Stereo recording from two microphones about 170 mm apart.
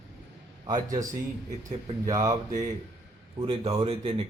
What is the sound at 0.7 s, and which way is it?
Speech, 20° right (ahead or behind).